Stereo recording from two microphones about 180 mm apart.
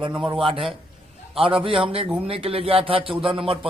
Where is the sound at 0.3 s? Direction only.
30° right (ahead or behind).